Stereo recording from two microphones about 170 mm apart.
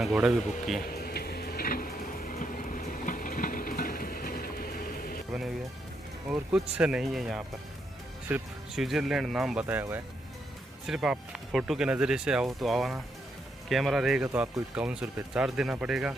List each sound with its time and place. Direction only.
0.0 s speech: centre (ahead or behind)
0.8 s a sound: 65° left (ahead or behind)
6.3 s speech: 5° right (ahead or behind)